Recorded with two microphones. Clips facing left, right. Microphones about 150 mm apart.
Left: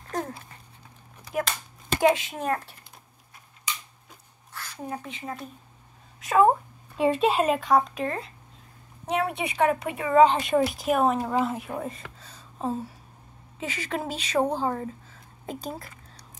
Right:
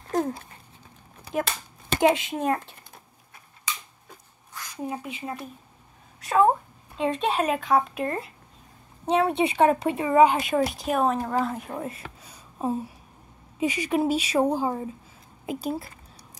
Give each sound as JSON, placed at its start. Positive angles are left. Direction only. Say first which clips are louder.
{"t": 2.0, "sound": "a woman's voice", "louder": "right 1 dB", "side_deg": -20}
{"t": 4.6, "sound": "speech", "louder": "right 2 dB", "side_deg": -15}
{"t": 6.1, "sound": "a woman's voice", "louder": "left 1 dB", "side_deg": 0}
{"t": 9.0, "sound": "a woman's voice", "louder": "right 5 dB", "side_deg": -25}
{"t": 10.1, "sound": "speech", "louder": "even", "side_deg": -10}
{"t": 10.5, "sound": "speech", "louder": "left 1 dB", "side_deg": 0}
{"t": 15.4, "sound": "a sound", "louder": "right 5 dB", "side_deg": -5}